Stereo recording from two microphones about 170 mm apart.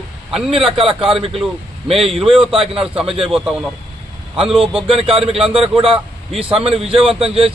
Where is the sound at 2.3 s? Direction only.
30° right (ahead or behind).